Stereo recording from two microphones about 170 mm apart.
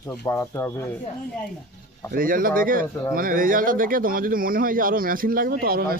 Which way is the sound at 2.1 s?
55° right (ahead or behind).